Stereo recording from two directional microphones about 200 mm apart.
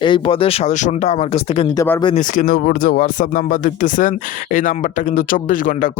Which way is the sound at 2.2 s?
40° left (ahead or behind).